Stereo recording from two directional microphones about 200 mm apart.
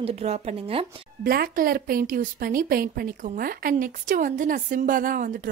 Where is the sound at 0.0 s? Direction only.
30° right (ahead or behind).